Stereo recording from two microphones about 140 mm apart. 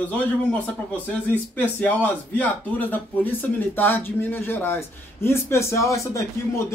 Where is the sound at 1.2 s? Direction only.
10° left (ahead or behind).